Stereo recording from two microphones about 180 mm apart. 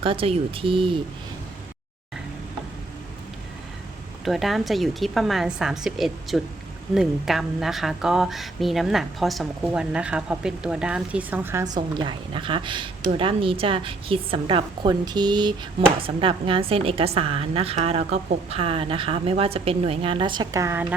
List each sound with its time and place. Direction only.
0.0 s speech: 30° right (ahead or behind)
4.3 s a woman's voice: centre (ahead or behind)